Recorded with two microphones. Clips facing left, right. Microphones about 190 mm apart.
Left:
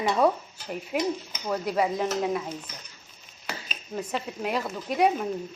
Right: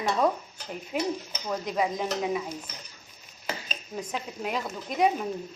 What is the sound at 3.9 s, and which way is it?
Speech, 5° right (ahead or behind).